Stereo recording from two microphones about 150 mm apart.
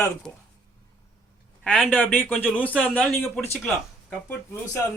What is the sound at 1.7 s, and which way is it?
Speech, 10° left (ahead or behind).